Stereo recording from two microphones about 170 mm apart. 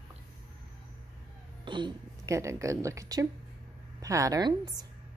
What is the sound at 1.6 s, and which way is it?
A woman's voice, 25° right (ahead or behind).